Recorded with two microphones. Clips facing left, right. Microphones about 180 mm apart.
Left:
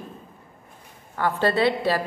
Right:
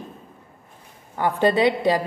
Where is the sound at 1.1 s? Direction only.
15° right (ahead or behind).